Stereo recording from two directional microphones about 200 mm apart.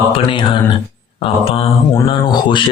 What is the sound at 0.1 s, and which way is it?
Speech, 25° left (ahead or behind).